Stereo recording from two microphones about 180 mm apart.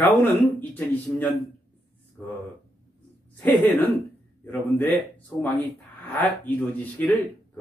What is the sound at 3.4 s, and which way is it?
Speech, 10° left (ahead or behind).